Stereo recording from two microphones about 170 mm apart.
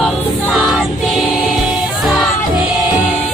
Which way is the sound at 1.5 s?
Centre (ahead or behind).